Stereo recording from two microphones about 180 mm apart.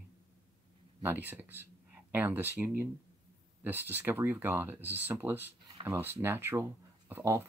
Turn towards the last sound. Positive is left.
turn(degrees=-15)  # may be behind; listen again after turning